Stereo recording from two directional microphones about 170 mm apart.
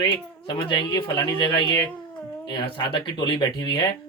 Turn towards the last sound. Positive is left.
turn(degrees=25)  # may be behind; listen again after turning